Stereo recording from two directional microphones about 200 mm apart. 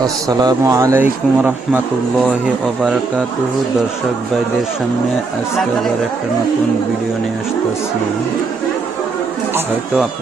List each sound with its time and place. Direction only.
0.0 s speech: 20° right (ahead or behind)